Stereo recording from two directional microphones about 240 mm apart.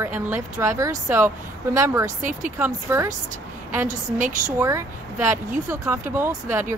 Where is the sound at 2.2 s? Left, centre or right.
Right.